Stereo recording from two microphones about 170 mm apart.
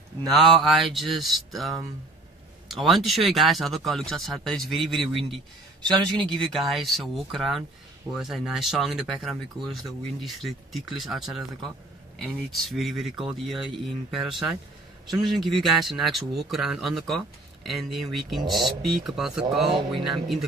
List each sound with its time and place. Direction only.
0.2 s a man's voice: centre (ahead or behind)
5.8 s speech: 25° right (ahead or behind)
6.3 s a man's voice: centre (ahead or behind)